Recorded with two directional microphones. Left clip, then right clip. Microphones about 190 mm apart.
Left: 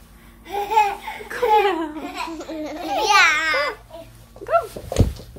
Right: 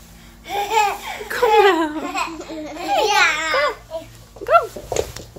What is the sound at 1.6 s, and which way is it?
Laughter, 25° right (ahead or behind).